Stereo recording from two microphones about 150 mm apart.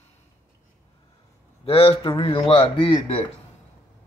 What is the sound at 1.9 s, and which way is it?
Speech, 35° left (ahead or behind).